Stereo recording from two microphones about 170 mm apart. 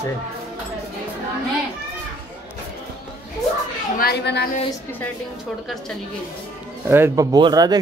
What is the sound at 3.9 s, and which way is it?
Speech, 70° left (ahead or behind).